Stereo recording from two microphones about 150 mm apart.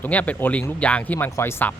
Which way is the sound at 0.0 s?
10° left (ahead or behind).